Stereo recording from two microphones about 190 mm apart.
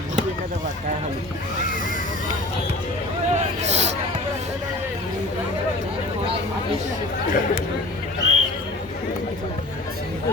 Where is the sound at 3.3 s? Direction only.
35° right (ahead or behind).